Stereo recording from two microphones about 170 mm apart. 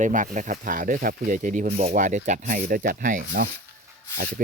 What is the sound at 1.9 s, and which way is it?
Speech, 50° right (ahead or behind).